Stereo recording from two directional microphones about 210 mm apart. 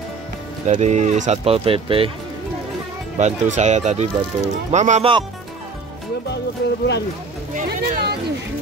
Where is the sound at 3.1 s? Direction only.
35° right (ahead or behind).